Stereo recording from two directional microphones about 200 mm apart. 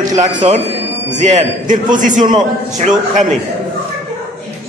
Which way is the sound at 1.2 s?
40° right (ahead or behind).